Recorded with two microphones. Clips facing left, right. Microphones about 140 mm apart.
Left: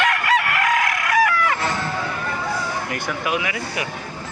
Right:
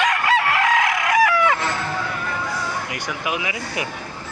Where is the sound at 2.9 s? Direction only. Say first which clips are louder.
Left 2 dB; 20° right (ahead or behind).